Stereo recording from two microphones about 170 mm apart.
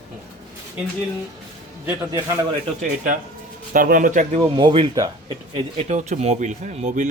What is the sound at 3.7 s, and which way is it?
Speech, 55° right (ahead or behind).